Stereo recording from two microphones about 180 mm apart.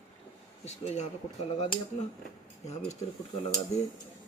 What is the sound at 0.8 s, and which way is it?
Speech, 40° left (ahead or behind).